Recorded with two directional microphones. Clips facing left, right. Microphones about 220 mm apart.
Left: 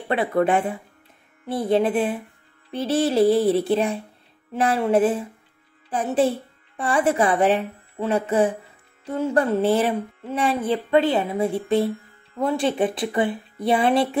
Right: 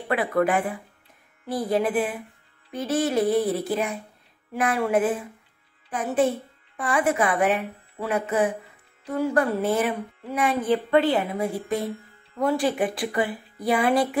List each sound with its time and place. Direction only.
0.1 s a woman's voice: 25° left (ahead or behind)